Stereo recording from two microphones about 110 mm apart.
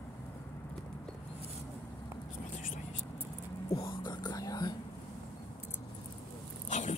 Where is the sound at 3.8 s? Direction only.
45° left (ahead or behind).